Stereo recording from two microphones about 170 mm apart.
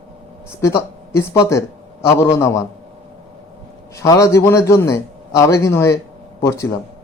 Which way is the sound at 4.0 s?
20° left (ahead or behind).